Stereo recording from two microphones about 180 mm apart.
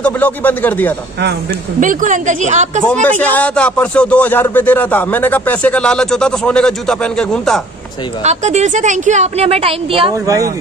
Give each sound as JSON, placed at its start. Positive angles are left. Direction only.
{"t": 0.0, "sound": "speech", "side_deg": 10}
{"t": 1.8, "sound": "a woman's voice", "side_deg": -45}
{"t": 2.9, "sound": "speech", "side_deg": 10}
{"t": 8.2, "sound": "a woman's voice", "side_deg": -40}
{"t": 10.2, "sound": "speech", "side_deg": -20}